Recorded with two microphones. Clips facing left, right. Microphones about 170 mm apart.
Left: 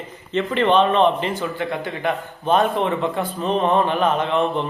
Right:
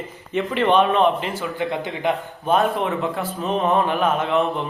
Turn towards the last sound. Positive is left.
turn(degrees=-5)  # may be behind; listen again after turning